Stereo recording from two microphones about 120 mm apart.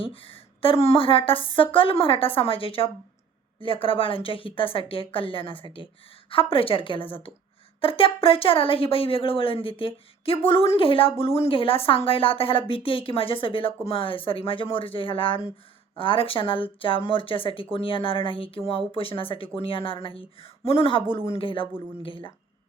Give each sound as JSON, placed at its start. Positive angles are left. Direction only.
{"t": 0.0, "sound": "a woman's voice", "side_deg": 50}